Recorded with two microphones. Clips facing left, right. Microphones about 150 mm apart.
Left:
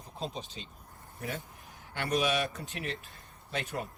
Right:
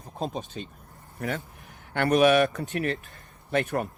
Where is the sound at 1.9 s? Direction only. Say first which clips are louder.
Right 10 dB; 60° right (ahead or behind).